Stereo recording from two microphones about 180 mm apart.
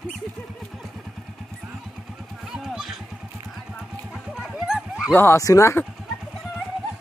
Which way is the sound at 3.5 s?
Centre (ahead or behind).